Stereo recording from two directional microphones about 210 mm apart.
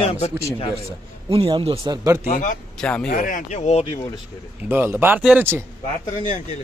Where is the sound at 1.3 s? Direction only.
25° right (ahead or behind).